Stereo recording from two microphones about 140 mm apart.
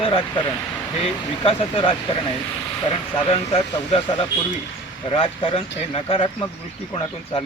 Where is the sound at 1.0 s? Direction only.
45° left (ahead or behind).